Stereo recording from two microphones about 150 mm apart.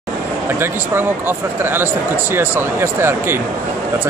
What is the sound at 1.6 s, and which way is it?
Speech, 15° right (ahead or behind).